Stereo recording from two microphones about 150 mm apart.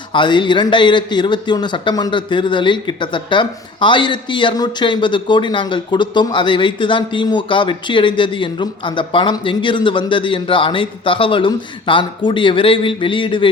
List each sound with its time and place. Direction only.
0.1 s speech: 30° left (ahead or behind)